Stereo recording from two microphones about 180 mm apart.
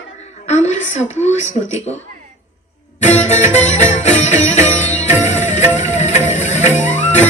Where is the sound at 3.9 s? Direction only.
40° left (ahead or behind).